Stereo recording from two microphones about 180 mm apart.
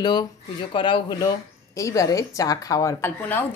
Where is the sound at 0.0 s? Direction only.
25° left (ahead or behind).